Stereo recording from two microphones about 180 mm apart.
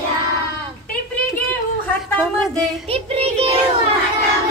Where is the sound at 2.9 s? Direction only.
35° right (ahead or behind).